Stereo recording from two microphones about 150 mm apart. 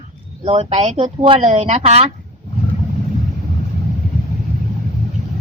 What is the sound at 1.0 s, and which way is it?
Speech, 35° right (ahead or behind).